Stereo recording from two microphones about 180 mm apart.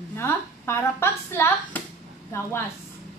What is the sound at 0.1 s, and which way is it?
A woman's voice, 15° left (ahead or behind).